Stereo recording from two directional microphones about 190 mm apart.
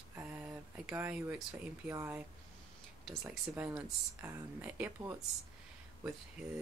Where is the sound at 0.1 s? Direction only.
10° right (ahead or behind).